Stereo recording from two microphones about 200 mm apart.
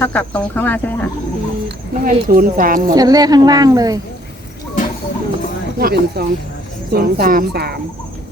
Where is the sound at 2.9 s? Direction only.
20° right (ahead or behind).